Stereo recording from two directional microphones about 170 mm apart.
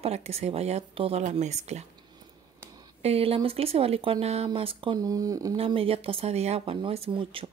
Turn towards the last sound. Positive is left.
turn(degrees=-30)  # may be behind; listen again after turning